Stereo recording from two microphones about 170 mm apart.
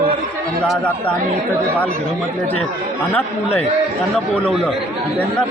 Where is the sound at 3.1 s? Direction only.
10° left (ahead or behind).